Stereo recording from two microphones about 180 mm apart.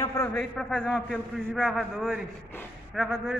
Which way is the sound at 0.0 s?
15° left (ahead or behind).